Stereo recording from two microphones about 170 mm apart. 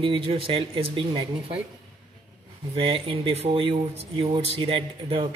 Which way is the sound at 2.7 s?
35° right (ahead or behind).